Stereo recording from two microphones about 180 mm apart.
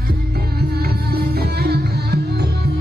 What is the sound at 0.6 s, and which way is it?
Music, 60° right (ahead or behind).